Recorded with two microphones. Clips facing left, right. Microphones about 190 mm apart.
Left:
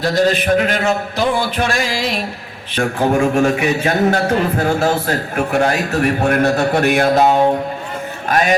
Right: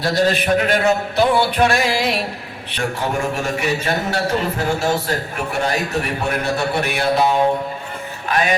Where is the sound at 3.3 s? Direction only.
55° left (ahead or behind).